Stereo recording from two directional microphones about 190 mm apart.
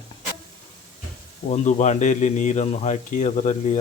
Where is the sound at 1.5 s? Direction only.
40° left (ahead or behind).